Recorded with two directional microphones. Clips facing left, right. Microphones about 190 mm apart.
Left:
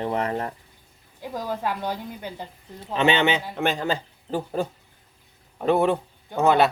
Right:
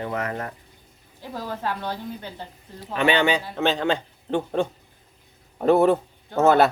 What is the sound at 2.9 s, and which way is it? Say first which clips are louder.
A man's voice: even; 25° left (ahead or behind).